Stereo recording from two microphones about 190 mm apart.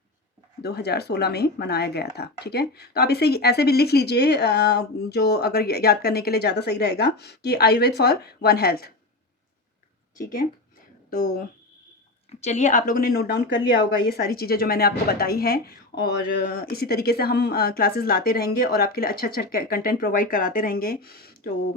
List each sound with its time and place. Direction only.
0.6 s speech: 60° left (ahead or behind)
12.3 s a woman's voice: 35° left (ahead or behind); by 21.5 s 50° left (ahead or behind)